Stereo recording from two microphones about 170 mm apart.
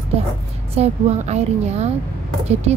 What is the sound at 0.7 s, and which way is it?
A woman's voice, 40° right (ahead or behind).